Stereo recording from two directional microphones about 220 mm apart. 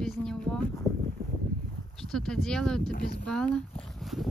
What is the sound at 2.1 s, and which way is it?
Speech, centre (ahead or behind).